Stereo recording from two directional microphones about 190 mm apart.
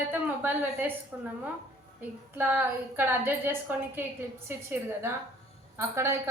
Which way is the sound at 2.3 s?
10° right (ahead or behind).